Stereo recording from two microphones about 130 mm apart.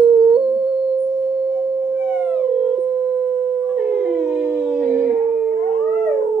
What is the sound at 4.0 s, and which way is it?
Howl, 10° right (ahead or behind).